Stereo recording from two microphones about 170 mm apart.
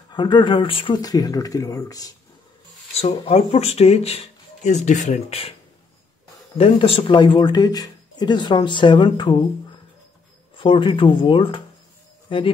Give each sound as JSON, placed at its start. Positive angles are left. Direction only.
{"t": 0.1, "sound": "speech", "side_deg": 25}
{"t": 2.9, "sound": "speech", "side_deg": 40}
{"t": 6.6, "sound": "speech", "side_deg": 35}
{"t": 10.5, "sound": "speech", "side_deg": 30}